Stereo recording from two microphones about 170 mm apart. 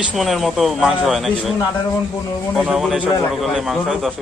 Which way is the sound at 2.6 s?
Centre (ahead or behind).